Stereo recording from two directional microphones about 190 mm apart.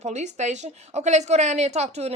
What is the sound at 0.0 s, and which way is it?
Speech, 35° right (ahead or behind).